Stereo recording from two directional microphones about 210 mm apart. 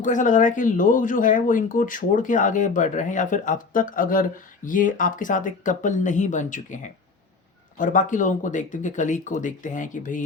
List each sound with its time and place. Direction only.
0.0 s speech: 35° left (ahead or behind)